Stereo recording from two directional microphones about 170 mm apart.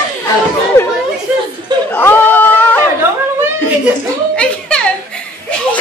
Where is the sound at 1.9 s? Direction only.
10° left (ahead or behind).